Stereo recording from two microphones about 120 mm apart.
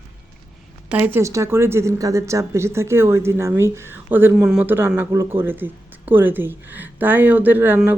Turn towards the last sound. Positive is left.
turn(degrees=-20)  # may be behind; listen again after turning